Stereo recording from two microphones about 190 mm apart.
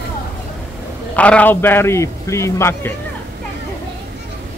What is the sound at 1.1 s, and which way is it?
A man's voice, 5° left (ahead or behind).